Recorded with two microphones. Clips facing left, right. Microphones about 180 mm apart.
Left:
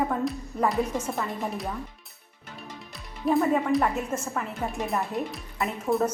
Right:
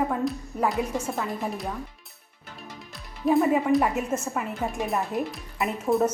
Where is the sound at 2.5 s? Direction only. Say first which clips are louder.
Left 1 dB; centre (ahead or behind).